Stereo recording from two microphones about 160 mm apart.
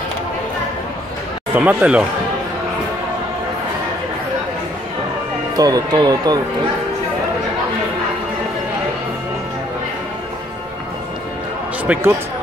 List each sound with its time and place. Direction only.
1.5 s speech: 10° right (ahead or behind)
5.6 s speech: 25° right (ahead or behind)
11.8 s speech: 10° right (ahead or behind)